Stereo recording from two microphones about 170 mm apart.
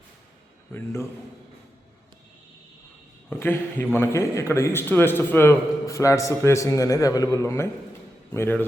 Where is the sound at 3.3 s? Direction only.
15° left (ahead or behind).